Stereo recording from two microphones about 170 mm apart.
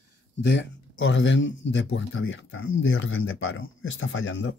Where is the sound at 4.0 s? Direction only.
90° left.